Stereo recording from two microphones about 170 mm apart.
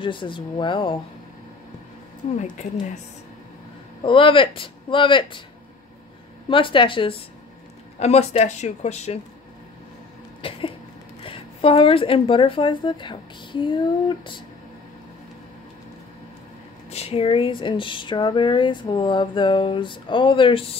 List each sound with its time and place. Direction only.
0.0 s speech: 30° left (ahead or behind)
2.3 s speech: 45° left (ahead or behind)
4.0 s speech: 30° left (ahead or behind)
6.5 s speech: 30° left (ahead or behind)
10.4 s cough: 30° left (ahead or behind)
11.2 s speech: 30° left (ahead or behind)
16.9 s speech: 35° left (ahead or behind)